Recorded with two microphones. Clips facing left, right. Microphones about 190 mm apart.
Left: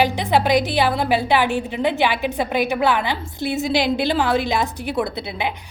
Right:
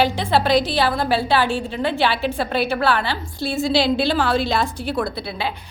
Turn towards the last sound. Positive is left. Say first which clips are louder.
# left 1 dB
turn(degrees=20)  # may be behind; listen again after turning